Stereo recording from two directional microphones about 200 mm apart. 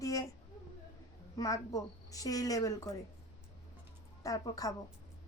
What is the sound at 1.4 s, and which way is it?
Speech, 15° left (ahead or behind).